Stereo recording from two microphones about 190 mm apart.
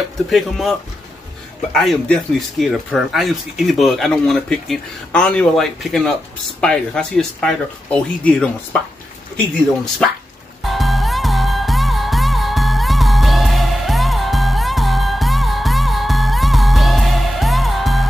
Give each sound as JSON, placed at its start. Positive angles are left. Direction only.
{"t": 0.3, "sound": "speech", "side_deg": 0}
{"t": 10.6, "sound": "music", "side_deg": 0}